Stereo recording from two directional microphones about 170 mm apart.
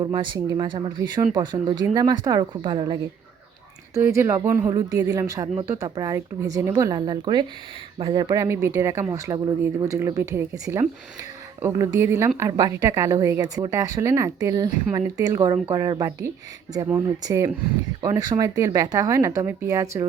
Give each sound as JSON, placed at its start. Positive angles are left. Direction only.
{"t": 0.0, "sound": "speech", "side_deg": -30}
{"t": 3.9, "sound": "speech", "side_deg": -15}